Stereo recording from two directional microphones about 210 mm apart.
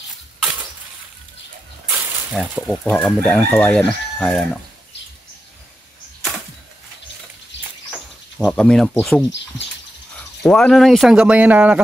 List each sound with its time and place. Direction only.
1.9 s snake: 10° right (ahead or behind)
2.4 s speech: centre (ahead or behind)
7.5 s a sound: 55° left (ahead or behind)
8.4 s speech: 5° left (ahead or behind)
10.4 s speech: centre (ahead or behind)